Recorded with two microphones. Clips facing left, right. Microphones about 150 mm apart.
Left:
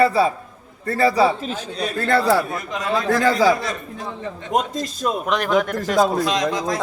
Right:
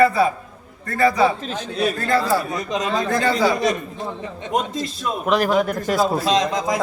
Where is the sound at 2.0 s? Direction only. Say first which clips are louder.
Left 5 dB; 75° left (ahead or behind).